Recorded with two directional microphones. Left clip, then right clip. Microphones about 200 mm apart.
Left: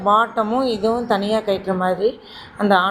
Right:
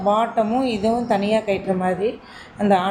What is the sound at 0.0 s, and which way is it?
A woman's voice, 5° left (ahead or behind).